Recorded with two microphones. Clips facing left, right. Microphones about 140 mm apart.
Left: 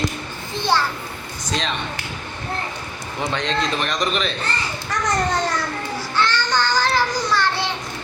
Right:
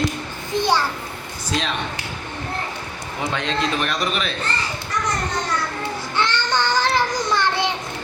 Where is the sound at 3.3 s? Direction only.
5° right (ahead or behind).